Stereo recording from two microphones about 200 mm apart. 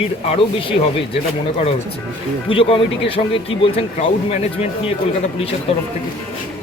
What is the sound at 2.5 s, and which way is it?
Speech, 25° left (ahead or behind).